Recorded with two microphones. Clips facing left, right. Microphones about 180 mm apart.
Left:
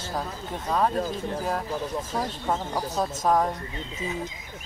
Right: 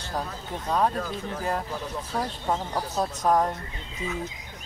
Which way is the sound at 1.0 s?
35° left (ahead or behind).